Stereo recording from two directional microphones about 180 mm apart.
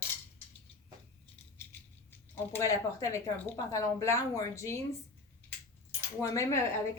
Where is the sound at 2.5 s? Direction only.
15° left (ahead or behind).